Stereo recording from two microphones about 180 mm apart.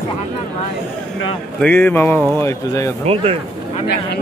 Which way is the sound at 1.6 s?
10° left (ahead or behind).